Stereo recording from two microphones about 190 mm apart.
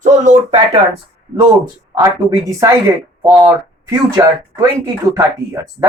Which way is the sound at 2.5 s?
15° right (ahead or behind).